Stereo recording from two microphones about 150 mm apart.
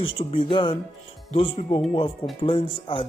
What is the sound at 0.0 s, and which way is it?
Speech, 35° left (ahead or behind).